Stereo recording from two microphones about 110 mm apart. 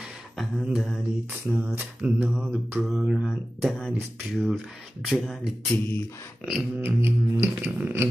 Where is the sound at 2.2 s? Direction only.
5° right (ahead or behind).